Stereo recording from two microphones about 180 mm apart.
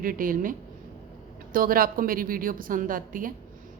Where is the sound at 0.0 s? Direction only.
50° right (ahead or behind).